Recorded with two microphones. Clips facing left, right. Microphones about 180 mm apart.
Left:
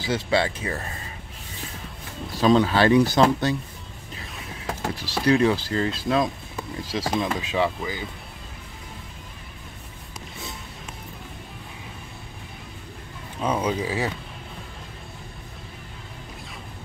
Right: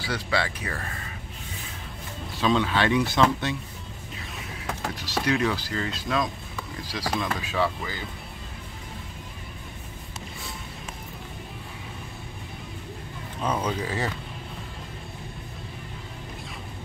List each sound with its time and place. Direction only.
0.0 s speech: 25° left (ahead or behind)
2.3 s speech: 40° left (ahead or behind)
5.2 s speech: 30° left (ahead or behind)
13.4 s speech: 10° left (ahead or behind)